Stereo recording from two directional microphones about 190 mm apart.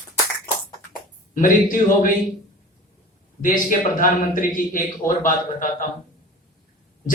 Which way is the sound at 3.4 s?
45° left (ahead or behind).